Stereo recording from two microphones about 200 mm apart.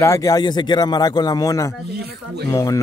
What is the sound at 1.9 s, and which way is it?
Speech, 55° right (ahead or behind).